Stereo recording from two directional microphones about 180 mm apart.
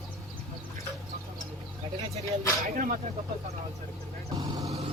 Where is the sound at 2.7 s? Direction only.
50° right (ahead or behind).